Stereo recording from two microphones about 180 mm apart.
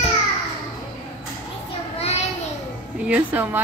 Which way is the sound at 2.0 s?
35° left (ahead or behind).